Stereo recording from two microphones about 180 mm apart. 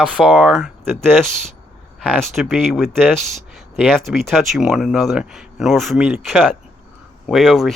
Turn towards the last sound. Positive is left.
turn(degrees=0)  # may be behind; listen again after turning